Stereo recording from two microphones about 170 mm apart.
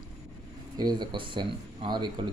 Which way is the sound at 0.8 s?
25° right (ahead or behind).